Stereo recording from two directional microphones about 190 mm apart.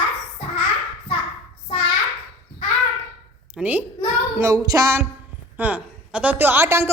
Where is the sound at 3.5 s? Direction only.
10° right (ahead or behind).